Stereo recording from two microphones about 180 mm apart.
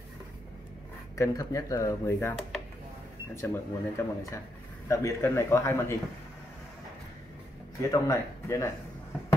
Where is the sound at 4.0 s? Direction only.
15° left (ahead or behind).